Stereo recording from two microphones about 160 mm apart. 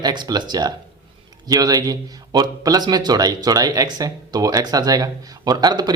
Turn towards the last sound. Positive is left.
turn(degrees=-25)  # may be behind; listen again after turning